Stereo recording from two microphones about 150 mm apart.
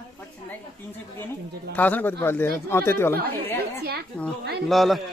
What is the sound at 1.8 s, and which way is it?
Speech, 10° left (ahead or behind).